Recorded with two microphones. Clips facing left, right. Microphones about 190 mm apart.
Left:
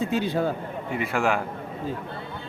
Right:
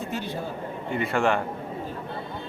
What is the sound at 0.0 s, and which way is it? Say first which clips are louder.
Speech: left 7 dB; 90° left.